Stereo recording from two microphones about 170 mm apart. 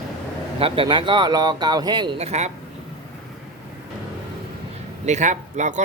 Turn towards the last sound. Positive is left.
turn(degrees=-45)  # may be behind; listen again after turning